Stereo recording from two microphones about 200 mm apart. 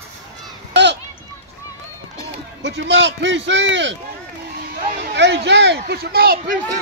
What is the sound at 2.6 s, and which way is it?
Speech, 60° right (ahead or behind).